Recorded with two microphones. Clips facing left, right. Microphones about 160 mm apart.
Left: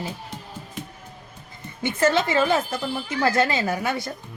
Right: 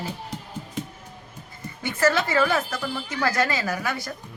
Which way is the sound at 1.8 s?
25° left (ahead or behind).